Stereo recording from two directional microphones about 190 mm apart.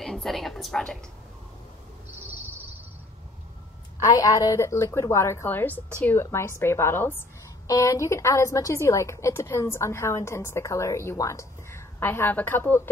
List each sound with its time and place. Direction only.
0.0 s a woman's voice: centre (ahead or behind)
4.0 s a woman's voice: 20° left (ahead or behind)